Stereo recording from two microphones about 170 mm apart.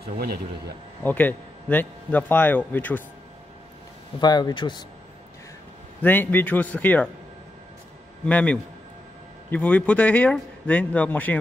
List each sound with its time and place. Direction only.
0.0 s speech: 65° right (ahead or behind)
1.0 s a man's voice: 10° left (ahead or behind)
4.2 s speech: 25° left (ahead or behind)
6.0 s a man's voice: 10° left (ahead or behind)
8.3 s a man's voice: 10° left (ahead or behind)